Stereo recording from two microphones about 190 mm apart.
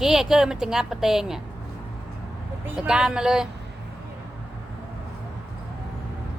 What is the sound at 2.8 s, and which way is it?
Speech, 5° right (ahead or behind).